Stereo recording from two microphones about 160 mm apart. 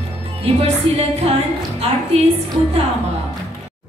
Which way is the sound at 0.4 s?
40° right (ahead or behind).